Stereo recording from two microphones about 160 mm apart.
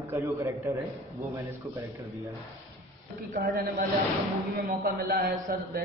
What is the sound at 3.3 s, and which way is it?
A man's voice, 65° right (ahead or behind).